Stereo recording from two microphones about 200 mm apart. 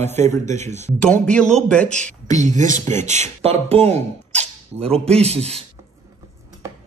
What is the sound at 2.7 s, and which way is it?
Speech, 15° left (ahead or behind).